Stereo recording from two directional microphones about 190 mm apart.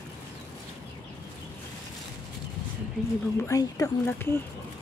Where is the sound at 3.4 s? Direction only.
15° left (ahead or behind).